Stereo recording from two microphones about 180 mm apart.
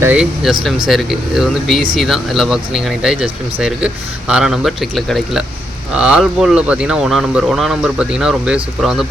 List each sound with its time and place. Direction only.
0.0 s speech: 5° right (ahead or behind)